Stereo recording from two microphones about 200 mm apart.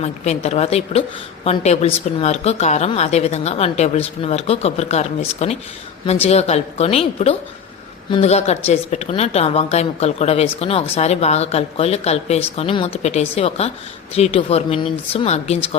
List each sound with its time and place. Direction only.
0.0 s speech: 35° left (ahead or behind)